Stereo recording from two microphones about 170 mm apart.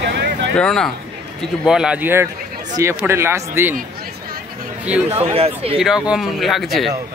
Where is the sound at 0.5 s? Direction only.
5° left (ahead or behind); by 3.7 s 15° right (ahead or behind).